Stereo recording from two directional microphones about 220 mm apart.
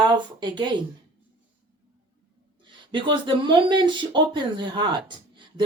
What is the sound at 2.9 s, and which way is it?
Speech, 20° right (ahead or behind).